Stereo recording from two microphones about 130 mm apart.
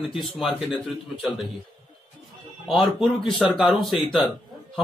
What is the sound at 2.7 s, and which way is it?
Speech, centre (ahead or behind).